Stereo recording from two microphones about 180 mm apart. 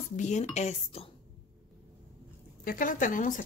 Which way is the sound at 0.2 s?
40° left (ahead or behind).